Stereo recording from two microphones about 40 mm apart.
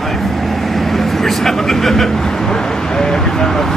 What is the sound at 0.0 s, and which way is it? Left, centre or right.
Speech, centre.